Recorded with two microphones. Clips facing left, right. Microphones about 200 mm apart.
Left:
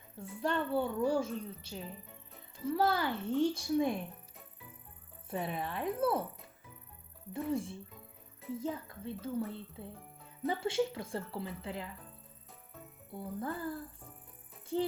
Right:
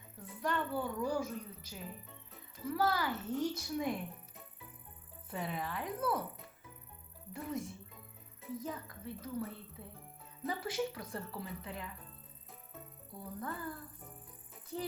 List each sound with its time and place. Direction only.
0.2 s speech: 30° left (ahead or behind)
5.3 s speech: 25° left (ahead or behind)
7.3 s speech: 30° left (ahead or behind)
13.1 s speech: 25° left (ahead or behind)